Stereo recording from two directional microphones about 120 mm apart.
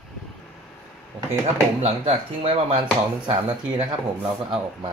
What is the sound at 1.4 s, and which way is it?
Speech, 65° right (ahead or behind).